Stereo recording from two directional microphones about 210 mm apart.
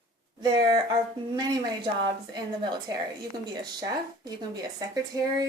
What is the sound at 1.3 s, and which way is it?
A woman's voice, 20° right (ahead or behind).